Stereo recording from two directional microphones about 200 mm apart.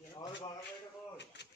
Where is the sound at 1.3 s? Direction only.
60° left (ahead or behind).